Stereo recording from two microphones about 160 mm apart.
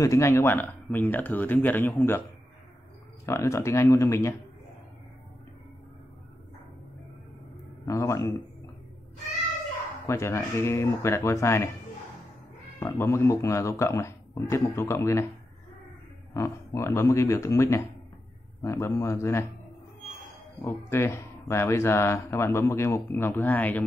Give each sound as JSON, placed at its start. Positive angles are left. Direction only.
{"t": 0.0, "sound": "speech", "side_deg": 20}
{"t": 3.3, "sound": "speech", "side_deg": 15}
{"t": 7.8, "sound": "speech", "side_deg": 20}
{"t": 10.0, "sound": "speech", "side_deg": 15}
{"t": 12.8, "sound": "speech", "side_deg": 15}
{"t": 16.3, "sound": "speech", "side_deg": 20}
{"t": 20.6, "sound": "speech", "side_deg": 15}